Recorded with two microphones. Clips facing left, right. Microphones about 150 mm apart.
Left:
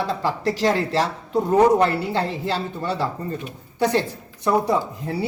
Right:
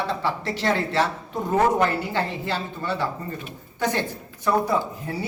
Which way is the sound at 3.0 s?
35° left (ahead or behind).